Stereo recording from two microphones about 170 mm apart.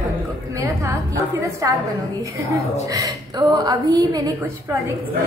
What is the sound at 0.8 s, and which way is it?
Speech, 20° right (ahead or behind).